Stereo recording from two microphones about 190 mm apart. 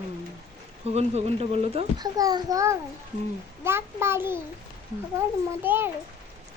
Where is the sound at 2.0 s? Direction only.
20° right (ahead or behind).